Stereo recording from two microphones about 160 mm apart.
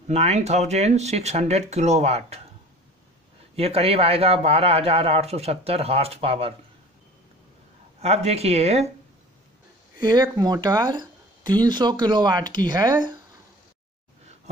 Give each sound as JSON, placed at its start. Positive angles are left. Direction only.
{"t": 0.1, "sound": "speech", "side_deg": -40}
{"t": 3.5, "sound": "a man's voice", "side_deg": -40}
{"t": 8.0, "sound": "a man's voice", "side_deg": -40}
{"t": 9.9, "sound": "speech", "side_deg": -25}